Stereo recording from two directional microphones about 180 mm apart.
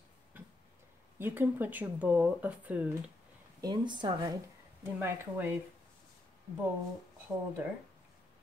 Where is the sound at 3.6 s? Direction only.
25° right (ahead or behind).